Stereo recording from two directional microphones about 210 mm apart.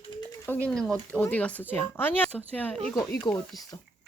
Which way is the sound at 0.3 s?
10° left (ahead or behind).